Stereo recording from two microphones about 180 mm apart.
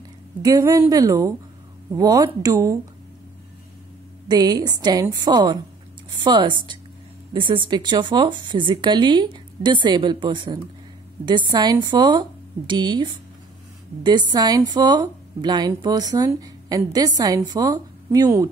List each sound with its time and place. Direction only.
0.4 s a woman's voice: 20° right (ahead or behind)
4.3 s a woman's voice: 20° right (ahead or behind)